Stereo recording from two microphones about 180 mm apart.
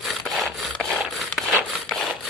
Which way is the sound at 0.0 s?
Centre (ahead or behind).